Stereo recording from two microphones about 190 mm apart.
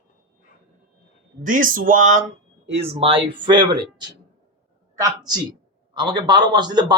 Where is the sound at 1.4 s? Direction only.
45° right (ahead or behind).